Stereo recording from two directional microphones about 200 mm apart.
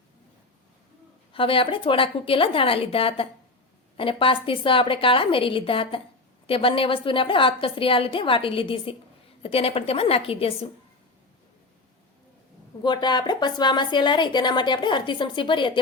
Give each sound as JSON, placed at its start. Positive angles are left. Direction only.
{"t": 1.3, "sound": "a woman's voice", "side_deg": 25}
{"t": 12.8, "sound": "a woman's voice", "side_deg": 20}